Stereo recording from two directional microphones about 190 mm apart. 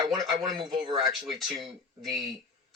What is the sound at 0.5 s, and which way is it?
Speech, 25° right (ahead or behind).